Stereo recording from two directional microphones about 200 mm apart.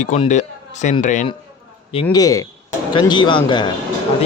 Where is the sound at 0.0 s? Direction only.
35° left (ahead or behind).